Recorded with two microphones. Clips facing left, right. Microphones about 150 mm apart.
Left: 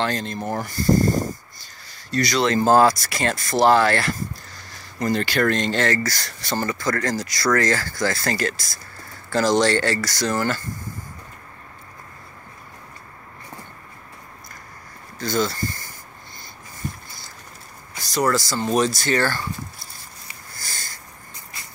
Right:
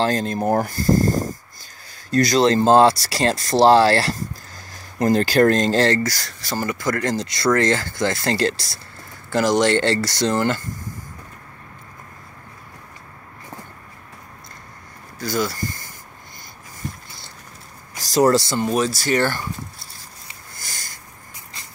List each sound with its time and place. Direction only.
0.0 s speech: 45° right (ahead or behind)
2.0 s speech: 45° right (ahead or behind)
2.4 s speech: 25° right (ahead or behind)
6.0 s speech: 5° right (ahead or behind)
6.7 s speech: 15° right (ahead or behind)
9.3 s speech: 15° right (ahead or behind)
15.1 s speech: 10° right (ahead or behind)
18.1 s speech: 35° right (ahead or behind)
18.7 s speech: 5° right (ahead or behind)
19.1 s speech: 15° right (ahead or behind)
20.5 s sniff: 15° right (ahead or behind)